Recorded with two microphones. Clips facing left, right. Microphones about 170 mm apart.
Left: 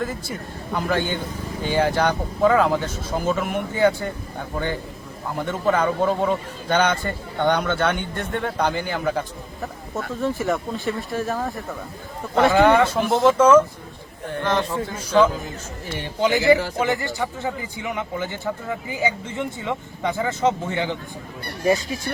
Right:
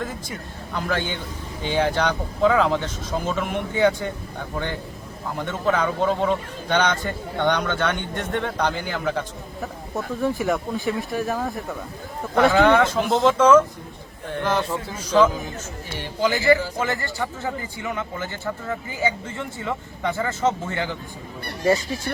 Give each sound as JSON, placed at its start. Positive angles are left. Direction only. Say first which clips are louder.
{"t": 0.0, "sound": "speech", "louder": "left 3 dB", "side_deg": 10}
{"t": 12.5, "sound": "speech", "louder": "left 2 dB", "side_deg": 10}
{"t": 14.4, "sound": "a man's voice", "louder": "even", "side_deg": -10}
{"t": 14.9, "sound": "speech", "louder": "even", "side_deg": 10}
{"t": 16.5, "sound": "a man's voice", "louder": "left 1 dB", "side_deg": 20}